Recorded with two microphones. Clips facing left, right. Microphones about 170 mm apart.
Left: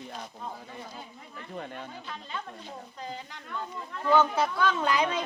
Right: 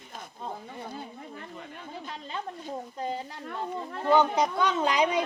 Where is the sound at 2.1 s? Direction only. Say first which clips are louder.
Right 5 dB; 35° right (ahead or behind).